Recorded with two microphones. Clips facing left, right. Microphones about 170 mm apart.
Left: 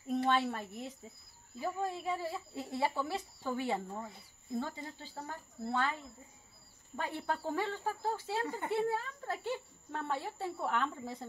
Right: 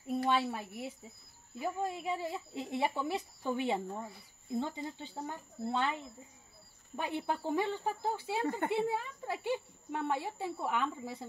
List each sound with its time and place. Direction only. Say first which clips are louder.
0.1 s a sound: even; 5° right (ahead or behind)
0.5 s speech: even; 10° right (ahead or behind)
7.0 s speech: right 2 dB; 15° right (ahead or behind)